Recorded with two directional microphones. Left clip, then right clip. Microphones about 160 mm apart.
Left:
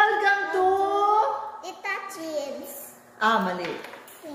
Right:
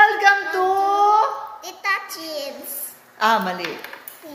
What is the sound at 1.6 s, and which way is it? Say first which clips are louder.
Speech: right 7 dB; 20° left (ahead or behind).